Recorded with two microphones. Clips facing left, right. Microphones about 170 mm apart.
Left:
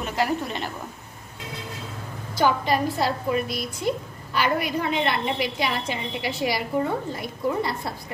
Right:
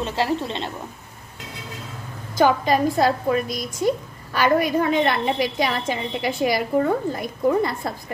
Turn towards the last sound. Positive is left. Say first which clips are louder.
# right 5 dB
turn(degrees=-50)  # may be behind; listen again after turning